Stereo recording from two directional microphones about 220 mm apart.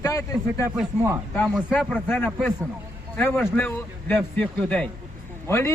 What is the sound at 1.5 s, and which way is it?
A man's voice, 5° left (ahead or behind).